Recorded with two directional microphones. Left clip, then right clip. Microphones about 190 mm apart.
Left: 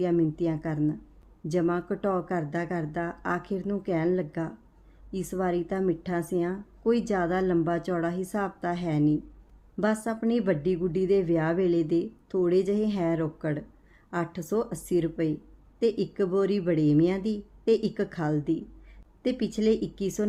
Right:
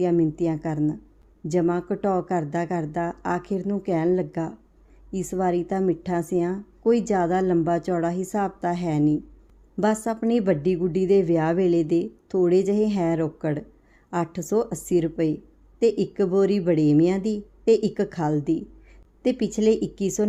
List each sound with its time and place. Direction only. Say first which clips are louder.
0.0 s a woman's voice: right 4 dB; 20° right (ahead or behind)